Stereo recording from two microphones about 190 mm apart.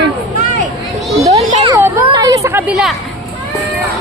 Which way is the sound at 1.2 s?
20° right (ahead or behind).